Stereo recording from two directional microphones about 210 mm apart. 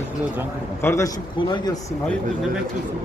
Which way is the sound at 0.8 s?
15° left (ahead or behind).